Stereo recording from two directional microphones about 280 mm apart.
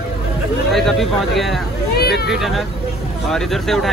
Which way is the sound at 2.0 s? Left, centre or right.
Left.